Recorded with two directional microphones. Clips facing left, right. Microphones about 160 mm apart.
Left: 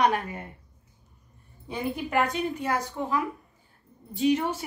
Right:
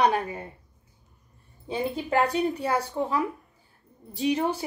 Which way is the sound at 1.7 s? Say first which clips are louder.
Right 2 dB; 30° right (ahead or behind).